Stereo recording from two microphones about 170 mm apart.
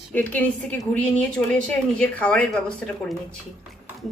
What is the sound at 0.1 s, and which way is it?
Speech, 10° left (ahead or behind).